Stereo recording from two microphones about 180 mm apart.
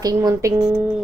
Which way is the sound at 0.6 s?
10° right (ahead or behind).